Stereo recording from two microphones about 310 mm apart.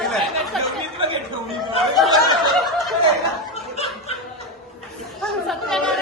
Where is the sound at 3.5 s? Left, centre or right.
Centre.